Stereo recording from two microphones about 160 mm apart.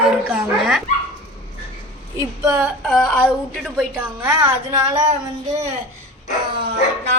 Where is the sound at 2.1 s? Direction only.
20° right (ahead or behind).